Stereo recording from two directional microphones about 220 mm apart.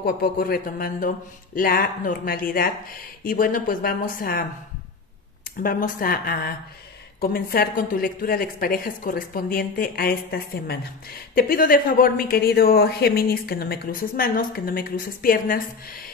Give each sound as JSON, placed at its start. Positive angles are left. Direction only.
{"t": 0.0, "sound": "speech", "side_deg": 45}
{"t": 5.6, "sound": "speech", "side_deg": 40}